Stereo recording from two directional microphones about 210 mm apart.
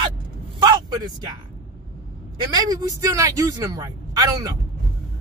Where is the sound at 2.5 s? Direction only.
15° right (ahead or behind).